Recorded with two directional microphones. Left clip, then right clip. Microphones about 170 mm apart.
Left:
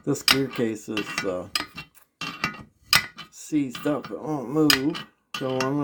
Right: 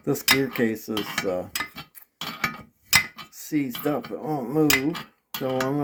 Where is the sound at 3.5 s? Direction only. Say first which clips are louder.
Even; 10° left (ahead or behind).